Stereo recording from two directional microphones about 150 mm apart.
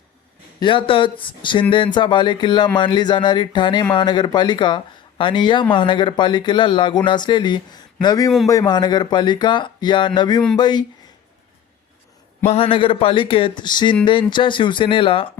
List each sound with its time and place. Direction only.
0.6 s speech: 35° left (ahead or behind)
12.5 s speech: 40° left (ahead or behind)